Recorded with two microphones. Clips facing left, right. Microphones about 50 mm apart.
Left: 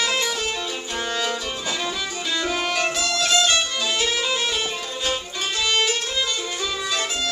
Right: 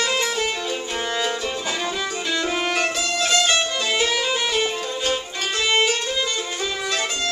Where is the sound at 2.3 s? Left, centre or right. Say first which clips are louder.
Right 1 dB; centre.